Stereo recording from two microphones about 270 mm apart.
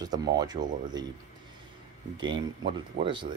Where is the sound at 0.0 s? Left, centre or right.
Centre.